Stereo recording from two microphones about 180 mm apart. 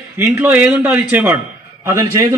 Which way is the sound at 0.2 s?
10° right (ahead or behind).